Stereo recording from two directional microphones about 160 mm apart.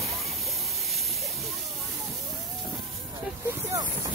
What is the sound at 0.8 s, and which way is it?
Hiss, centre (ahead or behind).